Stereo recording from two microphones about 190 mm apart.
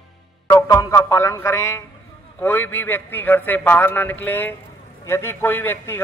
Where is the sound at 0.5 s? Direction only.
15° left (ahead or behind).